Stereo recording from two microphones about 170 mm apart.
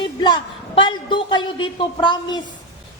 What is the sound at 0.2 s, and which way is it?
A woman's voice, 30° left (ahead or behind).